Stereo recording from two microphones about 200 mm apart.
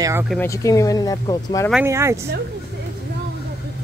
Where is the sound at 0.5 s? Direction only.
15° left (ahead or behind).